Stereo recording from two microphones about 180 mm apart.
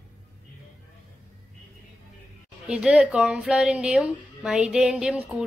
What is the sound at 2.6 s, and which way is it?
A woman's voice, 5° right (ahead or behind).